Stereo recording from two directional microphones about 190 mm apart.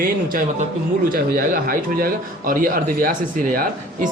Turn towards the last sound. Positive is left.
turn(degrees=-50)  # may be behind; listen again after turning